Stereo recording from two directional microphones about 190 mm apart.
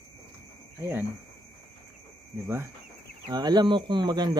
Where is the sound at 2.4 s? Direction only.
15° right (ahead or behind).